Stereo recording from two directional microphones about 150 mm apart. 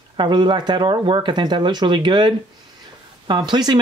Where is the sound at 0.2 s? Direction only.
30° right (ahead or behind).